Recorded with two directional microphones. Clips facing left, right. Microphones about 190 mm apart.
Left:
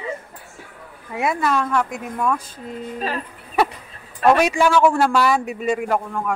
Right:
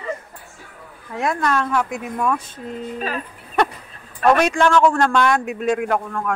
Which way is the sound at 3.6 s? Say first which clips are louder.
Even; 5° left (ahead or behind).